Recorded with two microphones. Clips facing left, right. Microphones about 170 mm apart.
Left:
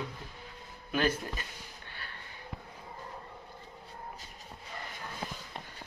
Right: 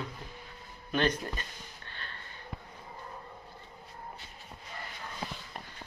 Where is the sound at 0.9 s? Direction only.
5° left (ahead or behind).